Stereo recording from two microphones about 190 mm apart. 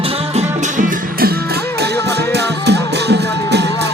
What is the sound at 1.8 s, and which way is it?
Music, 60° right (ahead or behind).